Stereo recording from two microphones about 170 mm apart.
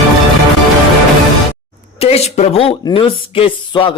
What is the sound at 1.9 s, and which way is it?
Speech, 35° left (ahead or behind).